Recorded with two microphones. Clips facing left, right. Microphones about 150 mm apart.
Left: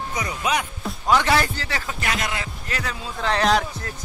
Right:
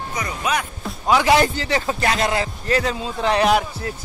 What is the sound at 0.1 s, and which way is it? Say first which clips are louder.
Speech: right 1 dB; 15° left (ahead or behind).